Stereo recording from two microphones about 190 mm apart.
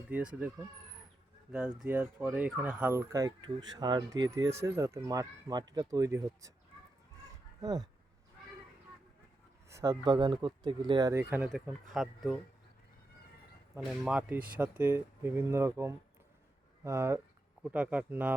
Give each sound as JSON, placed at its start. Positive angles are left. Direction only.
{"t": 0.1, "sound": "speech", "side_deg": -5}
{"t": 7.6, "sound": "speech", "side_deg": -20}
{"t": 9.6, "sound": "speech", "side_deg": -15}
{"t": 13.7, "sound": "speech", "side_deg": -5}